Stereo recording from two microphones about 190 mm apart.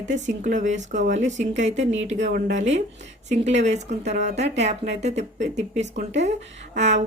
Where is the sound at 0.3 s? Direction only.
40° right (ahead or behind).